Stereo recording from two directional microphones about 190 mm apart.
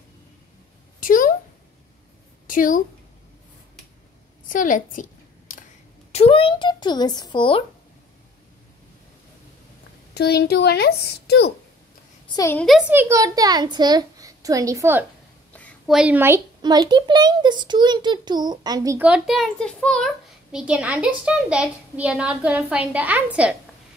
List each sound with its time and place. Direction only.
1.0 s a sound: 45° left (ahead or behind)
2.4 s a woman's voice: 45° left (ahead or behind)
4.5 s a woman's voice: 45° left (ahead or behind)
6.1 s speech: 30° left (ahead or behind)
10.1 s a woman's voice: 60° left (ahead or behind)
12.3 s a woman's voice: 20° left (ahead or behind)
12.5 s a woman's voice: centre (ahead or behind)
12.9 s a woman's voice: 15° right (ahead or behind)
15.5 s a sound: 10° left (ahead or behind)
16.0 s a woman's voice: 10° right (ahead or behind)
16.6 s a child's voice: 20° right (ahead or behind); by 20.1 s 5° left (ahead or behind)
20.5 s a woman's voice: 5° right (ahead or behind)